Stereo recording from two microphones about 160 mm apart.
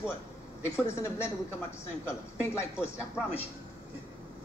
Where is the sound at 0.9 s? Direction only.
20° left (ahead or behind).